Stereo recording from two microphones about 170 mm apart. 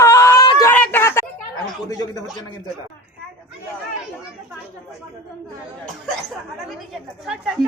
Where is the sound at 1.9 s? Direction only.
20° left (ahead or behind).